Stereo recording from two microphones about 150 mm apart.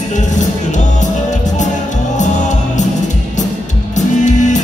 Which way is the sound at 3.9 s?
55° left (ahead or behind).